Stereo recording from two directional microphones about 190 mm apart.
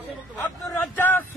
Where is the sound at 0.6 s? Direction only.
10° left (ahead or behind).